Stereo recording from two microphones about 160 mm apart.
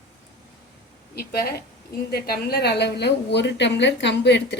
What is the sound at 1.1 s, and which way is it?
A woman's voice, 80° left.